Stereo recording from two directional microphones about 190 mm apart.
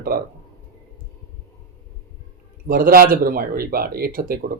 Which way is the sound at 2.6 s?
50° right (ahead or behind).